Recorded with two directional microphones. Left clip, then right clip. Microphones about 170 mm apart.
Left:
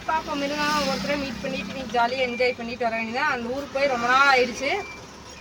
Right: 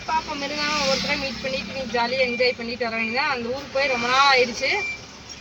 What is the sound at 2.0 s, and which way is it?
Speech, 15° left (ahead or behind).